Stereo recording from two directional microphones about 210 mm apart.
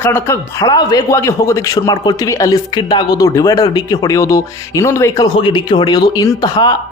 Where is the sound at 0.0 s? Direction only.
10° left (ahead or behind).